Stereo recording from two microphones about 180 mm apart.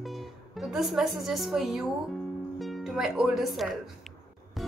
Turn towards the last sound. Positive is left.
turn(degrees=0)  # may be behind; listen again after turning